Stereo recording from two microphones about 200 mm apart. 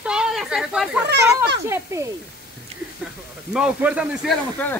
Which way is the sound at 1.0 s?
55° right (ahead or behind).